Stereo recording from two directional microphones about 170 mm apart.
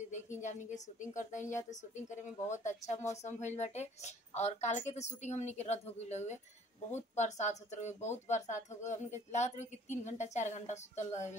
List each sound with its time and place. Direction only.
0.4 s a woman's voice: 45° left (ahead or behind)